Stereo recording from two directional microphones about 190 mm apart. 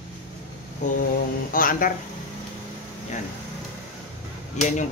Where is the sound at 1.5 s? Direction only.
45° left (ahead or behind).